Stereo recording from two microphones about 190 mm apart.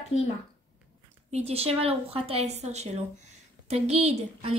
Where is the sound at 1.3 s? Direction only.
30° right (ahead or behind).